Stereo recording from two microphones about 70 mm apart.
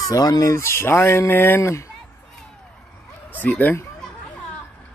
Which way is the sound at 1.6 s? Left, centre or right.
Left.